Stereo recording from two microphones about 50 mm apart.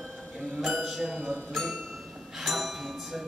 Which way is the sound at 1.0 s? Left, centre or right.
Right.